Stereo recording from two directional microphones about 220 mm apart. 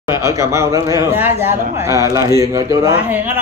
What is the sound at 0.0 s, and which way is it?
Speech, 15° right (ahead or behind).